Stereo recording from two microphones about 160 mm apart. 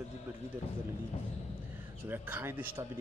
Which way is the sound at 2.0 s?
15° right (ahead or behind).